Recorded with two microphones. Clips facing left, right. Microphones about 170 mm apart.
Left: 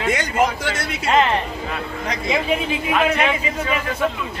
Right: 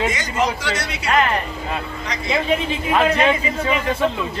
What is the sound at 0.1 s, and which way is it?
Speech, 55° left (ahead or behind).